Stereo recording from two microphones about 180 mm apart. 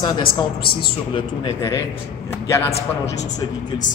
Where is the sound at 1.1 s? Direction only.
25° left (ahead or behind).